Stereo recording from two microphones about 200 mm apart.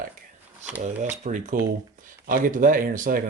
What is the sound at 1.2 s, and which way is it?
Speech, 40° right (ahead or behind).